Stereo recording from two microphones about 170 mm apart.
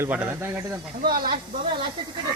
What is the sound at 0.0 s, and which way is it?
Speech, 10° right (ahead or behind).